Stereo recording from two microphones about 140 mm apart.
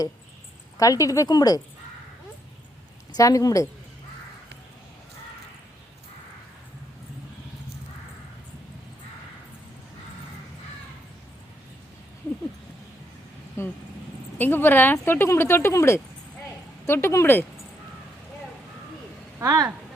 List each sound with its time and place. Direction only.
0.8 s speech: 25° left (ahead or behind)
3.2 s speech: 25° left (ahead or behind)
13.6 s vehicle: 20° left (ahead or behind)
14.3 s speech: 15° left (ahead or behind)
19.4 s speech: 25° right (ahead or behind)